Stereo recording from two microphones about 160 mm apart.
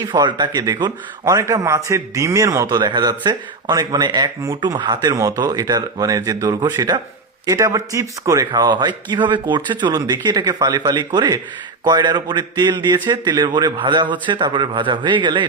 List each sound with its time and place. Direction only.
0.0 s speech: 30° right (ahead or behind)